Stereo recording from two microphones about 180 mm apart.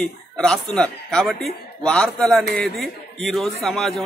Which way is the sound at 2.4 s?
60° right (ahead or behind).